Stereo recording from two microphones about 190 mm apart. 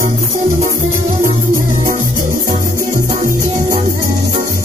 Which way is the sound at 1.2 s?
45° right (ahead or behind).